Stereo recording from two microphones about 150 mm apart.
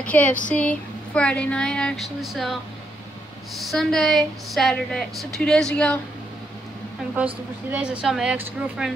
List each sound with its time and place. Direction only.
0.0 s speech: 10° left (ahead or behind)
3.5 s a woman's voice: centre (ahead or behind)
7.7 s a woman's voice: 5° right (ahead or behind)